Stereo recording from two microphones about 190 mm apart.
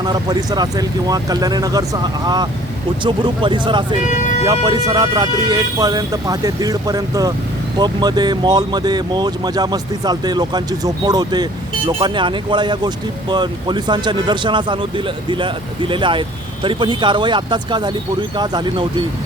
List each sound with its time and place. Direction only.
0.0 s speech: 20° right (ahead or behind)
4.0 s speech: 40° left (ahead or behind)
4.4 s speech: 20° right (ahead or behind)